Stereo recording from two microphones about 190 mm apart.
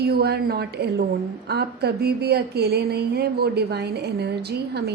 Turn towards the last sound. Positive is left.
turn(degrees=-60)  # may be behind; listen again after turning